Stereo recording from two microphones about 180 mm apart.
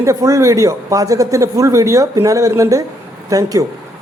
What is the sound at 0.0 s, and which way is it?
Speech, 15° right (ahead or behind).